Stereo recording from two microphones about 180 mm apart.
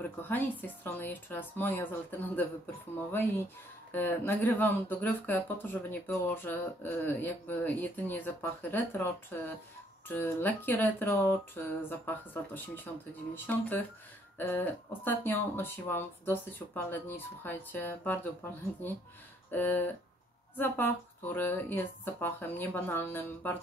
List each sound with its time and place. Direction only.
0.2 s speech: 10° left (ahead or behind)
19.5 s speech: 10° left (ahead or behind)